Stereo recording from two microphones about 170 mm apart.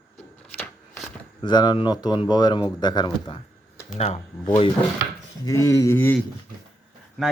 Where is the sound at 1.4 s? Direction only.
25° left (ahead or behind).